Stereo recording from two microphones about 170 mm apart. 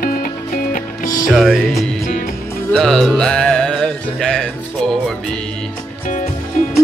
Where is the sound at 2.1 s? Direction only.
50° left (ahead or behind).